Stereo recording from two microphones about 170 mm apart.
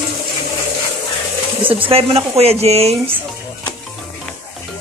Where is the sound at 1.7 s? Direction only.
30° right (ahead or behind).